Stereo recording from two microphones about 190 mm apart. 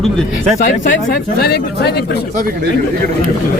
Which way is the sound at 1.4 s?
55° left (ahead or behind).